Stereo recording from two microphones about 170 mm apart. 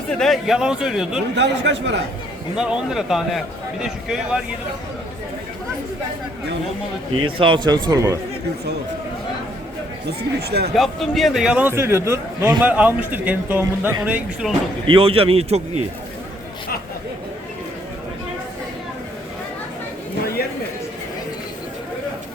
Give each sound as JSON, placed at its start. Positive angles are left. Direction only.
{"t": 0.1, "sound": "a man's voice", "side_deg": 0}
{"t": 1.4, "sound": "speech", "side_deg": -90}
{"t": 2.6, "sound": "a man's voice", "side_deg": -5}
{"t": 7.3, "sound": "speech", "side_deg": -30}
{"t": 10.1, "sound": "speech", "side_deg": -70}
{"t": 10.8, "sound": "a man's voice", "side_deg": 0}
{"t": 14.8, "sound": "a man's voice", "side_deg": -35}